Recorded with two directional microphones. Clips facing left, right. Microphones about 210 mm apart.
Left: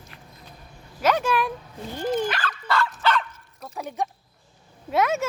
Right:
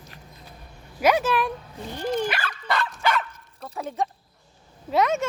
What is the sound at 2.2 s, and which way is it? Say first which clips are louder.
Dog: even; 10° right (ahead or behind).